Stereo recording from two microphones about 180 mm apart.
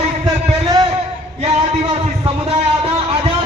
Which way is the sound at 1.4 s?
35° right (ahead or behind).